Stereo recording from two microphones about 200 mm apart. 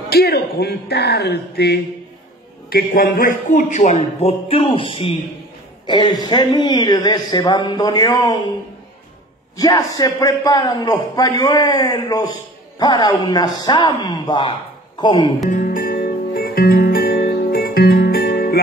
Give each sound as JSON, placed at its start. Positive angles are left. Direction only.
{"t": 0.1, "sound": "a man's voice", "side_deg": 50}
{"t": 9.6, "sound": "a man's voice", "side_deg": 20}
{"t": 15.5, "sound": "music", "side_deg": 45}